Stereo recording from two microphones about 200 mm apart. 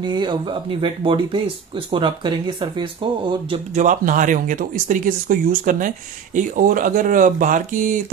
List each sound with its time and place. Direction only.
0.0 s speech: 20° right (ahead or behind); by 8.0 s 40° right (ahead or behind)